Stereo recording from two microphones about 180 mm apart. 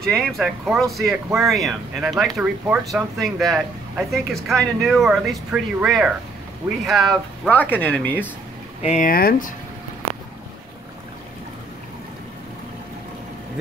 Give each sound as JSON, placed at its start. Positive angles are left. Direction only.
{"t": 0.0, "sound": "speech", "side_deg": 5}
{"t": 8.8, "sound": "speech", "side_deg": 40}
{"t": 9.1, "sound": "speech", "side_deg": 55}